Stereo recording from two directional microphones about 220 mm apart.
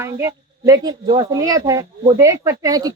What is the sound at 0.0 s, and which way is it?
Speech, 15° right (ahead or behind).